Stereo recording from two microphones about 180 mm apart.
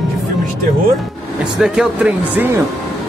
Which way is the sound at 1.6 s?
5° right (ahead or behind).